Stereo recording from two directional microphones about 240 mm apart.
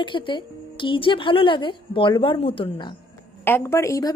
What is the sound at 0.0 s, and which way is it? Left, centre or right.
Speech, centre.